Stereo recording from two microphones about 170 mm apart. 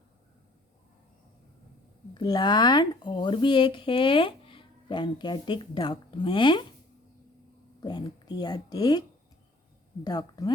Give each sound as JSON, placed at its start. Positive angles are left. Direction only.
{"t": 2.1, "sound": "speech", "side_deg": 25}
{"t": 7.8, "sound": "speech", "side_deg": 25}